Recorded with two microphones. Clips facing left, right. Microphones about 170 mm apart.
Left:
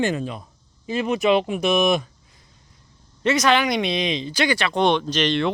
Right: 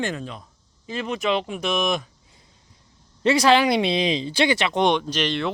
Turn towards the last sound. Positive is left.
turn(degrees=-5)  # may be behind; listen again after turning